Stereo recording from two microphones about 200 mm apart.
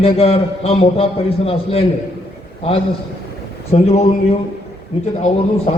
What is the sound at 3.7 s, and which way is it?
Speech, 30° left (ahead or behind).